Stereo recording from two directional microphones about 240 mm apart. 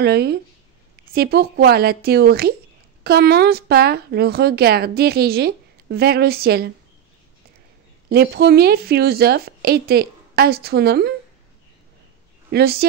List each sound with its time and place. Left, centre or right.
0.0 s speech: right
8.1 s speech: right
12.4 s speech: right